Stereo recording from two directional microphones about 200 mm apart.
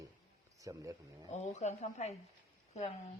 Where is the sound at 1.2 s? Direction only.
35° left (ahead or behind).